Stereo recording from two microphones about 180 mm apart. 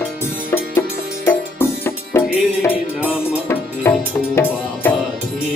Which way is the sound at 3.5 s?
15° left (ahead or behind).